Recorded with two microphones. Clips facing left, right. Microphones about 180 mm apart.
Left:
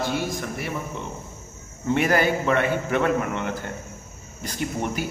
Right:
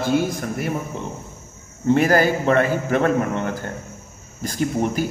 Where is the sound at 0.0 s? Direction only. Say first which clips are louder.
Right 6 dB; 45° right (ahead or behind).